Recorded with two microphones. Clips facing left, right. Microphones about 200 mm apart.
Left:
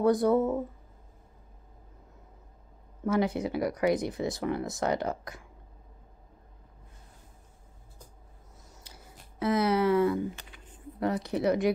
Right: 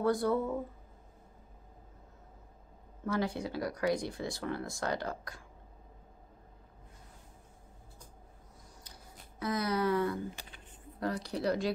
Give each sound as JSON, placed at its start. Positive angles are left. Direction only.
{"t": 0.0, "sound": "speech", "side_deg": 20}
{"t": 3.1, "sound": "speech", "side_deg": 20}
{"t": 9.4, "sound": "speech", "side_deg": 25}